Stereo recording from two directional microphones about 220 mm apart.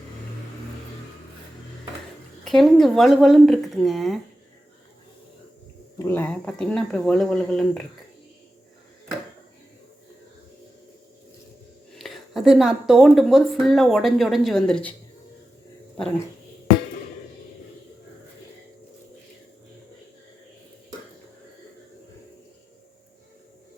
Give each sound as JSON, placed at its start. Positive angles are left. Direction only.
{"t": 2.4, "sound": "a woman's voice", "side_deg": 0}
{"t": 6.0, "sound": "a woman's voice", "side_deg": 10}
{"t": 11.9, "sound": "a sound", "side_deg": 0}
{"t": 12.9, "sound": "a woman's voice", "side_deg": 0}